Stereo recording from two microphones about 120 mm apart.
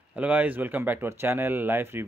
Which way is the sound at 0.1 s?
15° right (ahead or behind).